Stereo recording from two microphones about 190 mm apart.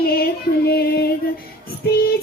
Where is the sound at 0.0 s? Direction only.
55° left (ahead or behind).